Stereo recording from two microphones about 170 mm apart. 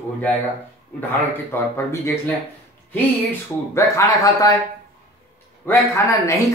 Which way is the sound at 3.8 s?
20° left (ahead or behind).